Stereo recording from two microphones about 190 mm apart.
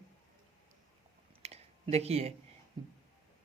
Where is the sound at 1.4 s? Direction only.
35° right (ahead or behind).